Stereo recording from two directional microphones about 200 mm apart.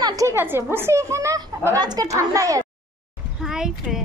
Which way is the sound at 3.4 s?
Centre (ahead or behind).